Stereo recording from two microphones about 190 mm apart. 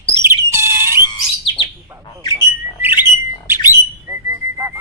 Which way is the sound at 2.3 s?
15° right (ahead or behind).